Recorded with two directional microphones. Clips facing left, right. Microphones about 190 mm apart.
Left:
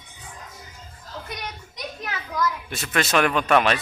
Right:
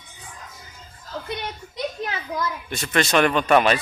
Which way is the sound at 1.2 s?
30° right (ahead or behind).